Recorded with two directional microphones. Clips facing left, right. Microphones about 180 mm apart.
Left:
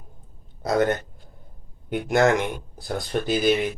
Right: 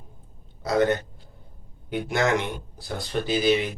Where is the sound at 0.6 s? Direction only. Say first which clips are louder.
Even; 50° left (ahead or behind).